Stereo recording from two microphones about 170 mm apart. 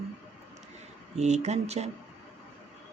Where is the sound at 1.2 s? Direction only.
40° right (ahead or behind).